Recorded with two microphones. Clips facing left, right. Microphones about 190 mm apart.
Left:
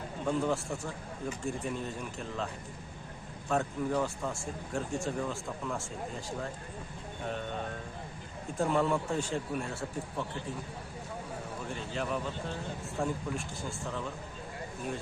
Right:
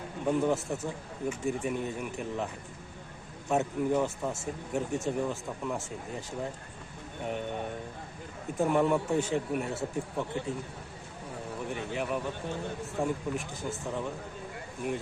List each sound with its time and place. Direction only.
0.3 s speech: 20° right (ahead or behind)
3.5 s speech: 20° right (ahead or behind)
7.3 s speech: 15° right (ahead or behind)
11.9 s speech: 15° right (ahead or behind)